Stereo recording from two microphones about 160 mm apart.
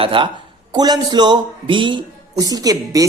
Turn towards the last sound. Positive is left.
turn(degrees=-25)  # may be behind; listen again after turning